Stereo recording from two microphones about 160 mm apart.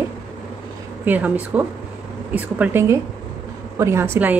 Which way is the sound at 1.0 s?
10° right (ahead or behind).